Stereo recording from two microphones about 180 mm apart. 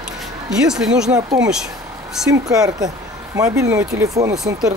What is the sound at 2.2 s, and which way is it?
Speech, 5° right (ahead or behind).